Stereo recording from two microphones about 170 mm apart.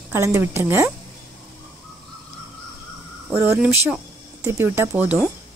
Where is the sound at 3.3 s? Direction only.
15° right (ahead or behind).